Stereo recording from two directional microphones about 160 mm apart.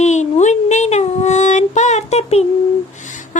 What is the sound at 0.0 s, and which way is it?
Female singing, 45° left (ahead or behind).